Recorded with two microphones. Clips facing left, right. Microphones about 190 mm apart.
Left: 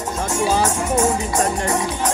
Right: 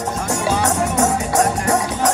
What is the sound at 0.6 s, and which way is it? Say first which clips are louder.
Music: right 1 dB; 70° right (ahead or behind).